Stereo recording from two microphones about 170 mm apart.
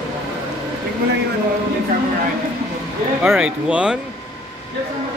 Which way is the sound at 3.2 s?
5° right (ahead or behind).